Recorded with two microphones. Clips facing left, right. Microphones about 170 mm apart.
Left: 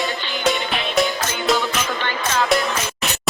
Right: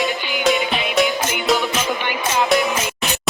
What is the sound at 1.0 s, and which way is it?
Music, 20° right (ahead or behind).